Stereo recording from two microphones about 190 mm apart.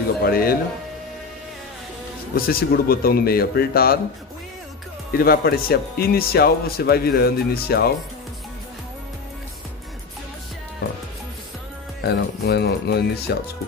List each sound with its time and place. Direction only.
0.2 s speech: 55° left (ahead or behind)
2.3 s speech: 50° left (ahead or behind)
5.1 s speech: 50° left (ahead or behind)
12.0 s speech: 60° left (ahead or behind)